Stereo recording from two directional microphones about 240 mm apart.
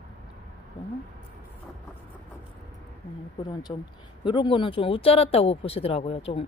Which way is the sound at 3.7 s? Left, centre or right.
Centre.